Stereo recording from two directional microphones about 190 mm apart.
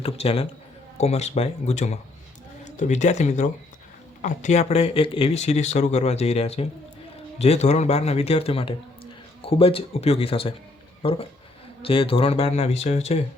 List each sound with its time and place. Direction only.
0.0 s speech: 30° left (ahead or behind)